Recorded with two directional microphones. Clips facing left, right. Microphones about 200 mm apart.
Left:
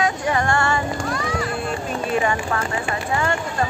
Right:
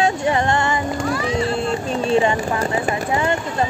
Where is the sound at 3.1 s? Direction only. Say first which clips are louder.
Right 3 dB; 20° right (ahead or behind).